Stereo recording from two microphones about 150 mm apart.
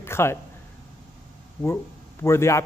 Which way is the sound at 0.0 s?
15° left (ahead or behind).